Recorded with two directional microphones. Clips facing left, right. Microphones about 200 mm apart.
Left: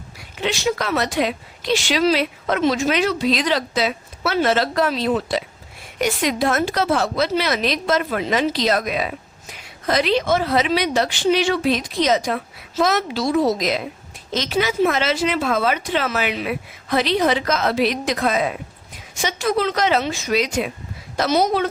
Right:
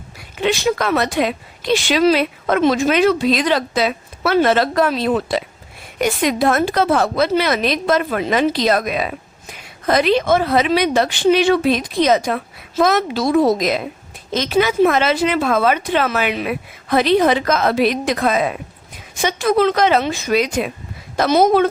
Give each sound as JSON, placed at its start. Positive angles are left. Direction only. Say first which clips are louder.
{"t": 0.4, "sound": "a woman's voice", "louder": "right 4 dB", "side_deg": -55}